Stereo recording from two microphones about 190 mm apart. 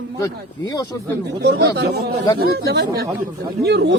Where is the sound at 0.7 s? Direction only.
20° left (ahead or behind).